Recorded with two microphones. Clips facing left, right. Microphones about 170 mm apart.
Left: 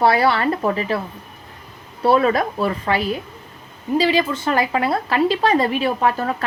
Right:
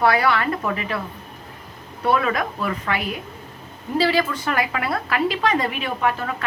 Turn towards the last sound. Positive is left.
turn(degrees=35)  # may be behind; listen again after turning